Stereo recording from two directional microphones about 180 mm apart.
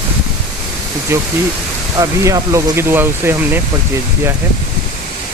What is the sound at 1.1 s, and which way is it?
Speech, 15° right (ahead or behind).